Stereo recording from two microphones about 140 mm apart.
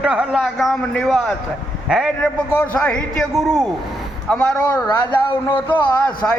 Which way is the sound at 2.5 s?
10° left (ahead or behind).